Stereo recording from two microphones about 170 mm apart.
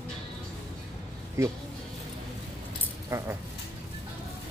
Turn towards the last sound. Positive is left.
turn(degrees=-15)  # may be behind; listen again after turning